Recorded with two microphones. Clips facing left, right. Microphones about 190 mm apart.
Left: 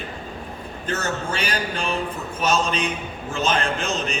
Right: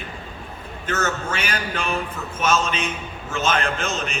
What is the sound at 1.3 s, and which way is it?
Speech, 35° left (ahead or behind).